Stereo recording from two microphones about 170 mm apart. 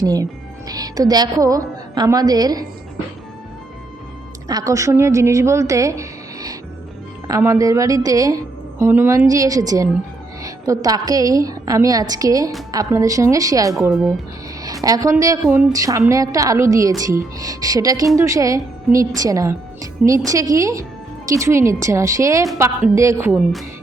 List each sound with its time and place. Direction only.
0.7 s speech: 20° right (ahead or behind)
4.4 s a woman's voice: 20° right (ahead or behind)
23.3 s speech: centre (ahead or behind)